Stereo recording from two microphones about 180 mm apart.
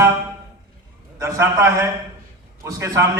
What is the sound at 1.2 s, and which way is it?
A man's voice, 15° right (ahead or behind).